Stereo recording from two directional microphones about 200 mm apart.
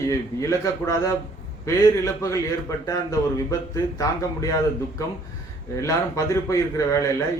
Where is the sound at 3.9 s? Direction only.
15° left (ahead or behind).